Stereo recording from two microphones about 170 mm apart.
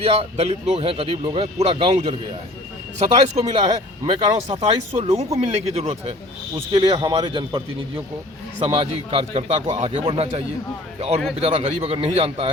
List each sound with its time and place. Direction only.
0.0 s speech: 35° right (ahead or behind)
3.3 s speech: 40° right (ahead or behind)
6.7 s a man's voice: 25° right (ahead or behind)
8.6 s speech: 30° right (ahead or behind)